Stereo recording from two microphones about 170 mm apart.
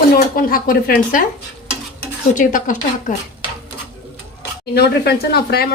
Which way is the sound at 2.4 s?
50° left (ahead or behind).